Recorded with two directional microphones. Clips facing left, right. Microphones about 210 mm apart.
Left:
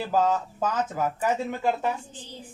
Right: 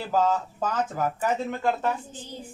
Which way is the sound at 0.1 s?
5° left (ahead or behind).